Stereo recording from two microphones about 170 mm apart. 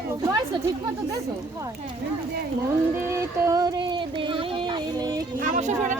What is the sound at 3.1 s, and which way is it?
Music, 20° right (ahead or behind).